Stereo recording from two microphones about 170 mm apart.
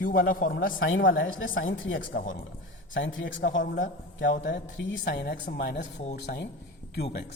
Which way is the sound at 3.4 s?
90° left.